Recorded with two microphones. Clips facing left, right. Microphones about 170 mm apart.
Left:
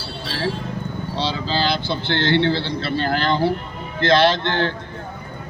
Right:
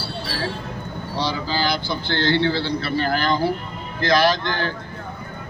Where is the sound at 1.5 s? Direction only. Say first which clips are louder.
Left 3 dB; 25° left (ahead or behind).